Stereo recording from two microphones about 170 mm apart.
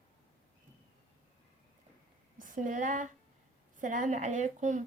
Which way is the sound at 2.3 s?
50° right (ahead or behind).